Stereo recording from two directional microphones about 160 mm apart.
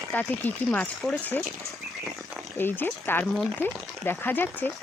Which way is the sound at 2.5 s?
15° left (ahead or behind).